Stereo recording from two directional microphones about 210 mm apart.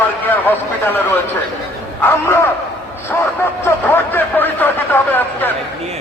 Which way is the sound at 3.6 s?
10° left (ahead or behind).